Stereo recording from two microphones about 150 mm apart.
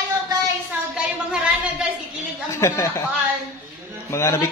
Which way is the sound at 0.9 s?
5° right (ahead or behind).